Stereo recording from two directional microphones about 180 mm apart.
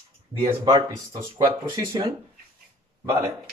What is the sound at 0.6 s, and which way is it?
Speech, 20° right (ahead or behind).